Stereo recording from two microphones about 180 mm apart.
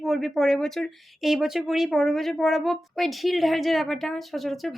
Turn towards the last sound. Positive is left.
turn(degrees=0)  # may be behind; listen again after turning